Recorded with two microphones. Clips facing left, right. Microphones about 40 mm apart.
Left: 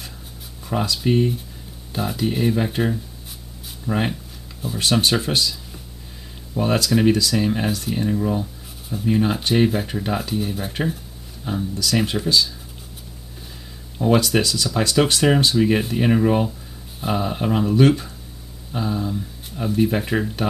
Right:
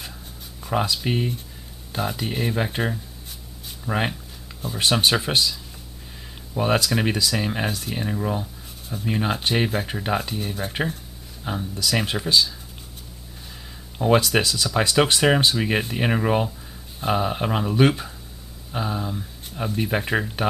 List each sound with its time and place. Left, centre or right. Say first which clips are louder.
0.7 s speech: left 2 dB; centre
4.1 s a sound: left 4 dB; centre
4.7 s speech: left 1 dB; centre
11.4 s speech: left 2 dB; centre
13.9 s speech: left 1 dB; centre